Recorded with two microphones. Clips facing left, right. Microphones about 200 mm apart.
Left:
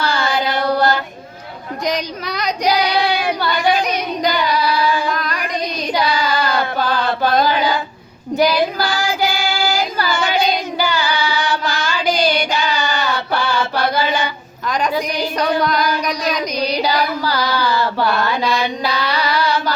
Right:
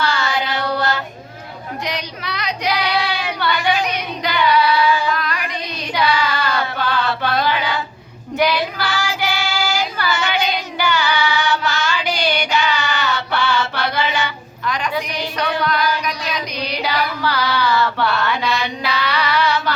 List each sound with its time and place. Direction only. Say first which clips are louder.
0.0 s child singing: left 1 dB; 35° left (ahead or behind)
1.8 s child singing: left 7 dB; 40° left (ahead or behind)
3.4 s singing: even; 35° left (ahead or behind)
5.0 s child singing: even; 40° left (ahead or behind)
5.9 s chant: even; 40° left (ahead or behind)
8.4 s child singing: left 3 dB; 40° left (ahead or behind)
13.7 s mantra: left 4 dB; 35° left (ahead or behind)
14.7 s a sound: left 4 dB; 40° left (ahead or behind)